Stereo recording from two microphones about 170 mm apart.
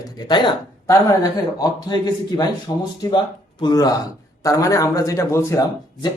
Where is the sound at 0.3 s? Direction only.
25° left (ahead or behind).